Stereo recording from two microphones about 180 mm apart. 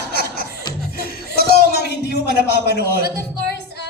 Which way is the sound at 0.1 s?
60° left (ahead or behind).